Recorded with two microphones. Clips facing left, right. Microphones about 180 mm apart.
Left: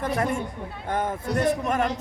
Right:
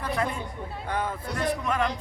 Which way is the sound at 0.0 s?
45° left (ahead or behind).